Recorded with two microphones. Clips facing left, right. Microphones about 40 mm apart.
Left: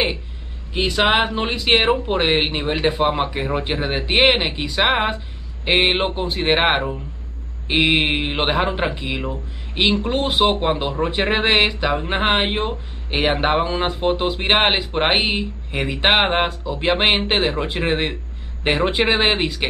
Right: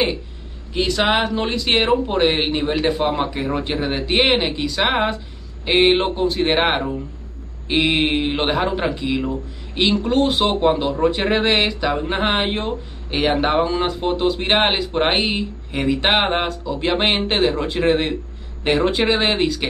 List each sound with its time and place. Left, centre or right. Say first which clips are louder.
0.7 s speech: left 1 dB; centre